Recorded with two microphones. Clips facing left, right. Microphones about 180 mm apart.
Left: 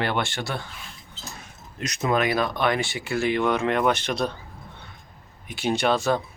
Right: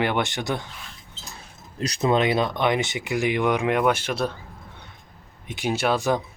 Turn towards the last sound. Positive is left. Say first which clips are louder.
# even
turn(degrees=-10)  # may be behind; listen again after turning